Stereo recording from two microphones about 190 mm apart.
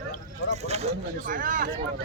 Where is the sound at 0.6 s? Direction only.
35° right (ahead or behind).